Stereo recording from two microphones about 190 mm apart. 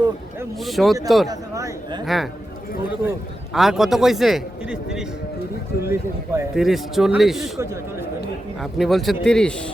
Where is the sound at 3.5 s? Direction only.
Centre (ahead or behind).